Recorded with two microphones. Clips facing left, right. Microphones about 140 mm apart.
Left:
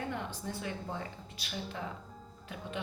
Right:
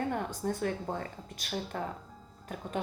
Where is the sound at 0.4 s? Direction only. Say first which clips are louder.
Right 7 dB; 50° right (ahead or behind).